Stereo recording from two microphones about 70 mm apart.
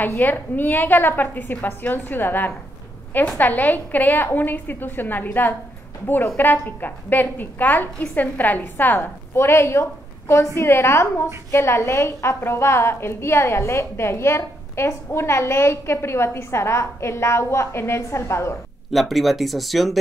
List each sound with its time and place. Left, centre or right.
0.2 s a woman's voice: left
18.9 s speech: centre